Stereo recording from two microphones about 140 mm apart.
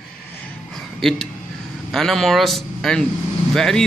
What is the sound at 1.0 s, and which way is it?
A man's voice, centre (ahead or behind).